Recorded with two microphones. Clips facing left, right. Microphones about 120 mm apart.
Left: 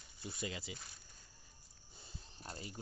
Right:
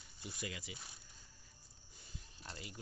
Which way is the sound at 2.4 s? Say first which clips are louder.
Left 3 dB; 35° left (ahead or behind).